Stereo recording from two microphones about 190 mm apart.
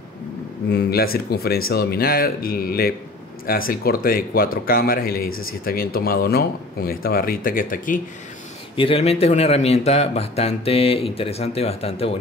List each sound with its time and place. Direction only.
0.7 s speech: 60° left (ahead or behind)
8.7 s a man's voice: 30° left (ahead or behind)